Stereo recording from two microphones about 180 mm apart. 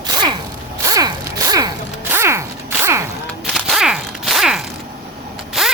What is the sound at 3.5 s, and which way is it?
Zipper, centre (ahead or behind).